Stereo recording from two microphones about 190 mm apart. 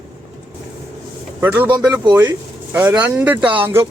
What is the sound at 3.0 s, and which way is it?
Speech, 10° right (ahead or behind).